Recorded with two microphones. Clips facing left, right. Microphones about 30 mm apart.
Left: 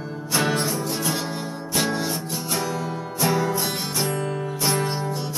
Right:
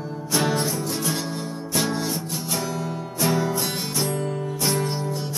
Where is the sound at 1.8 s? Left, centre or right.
Centre.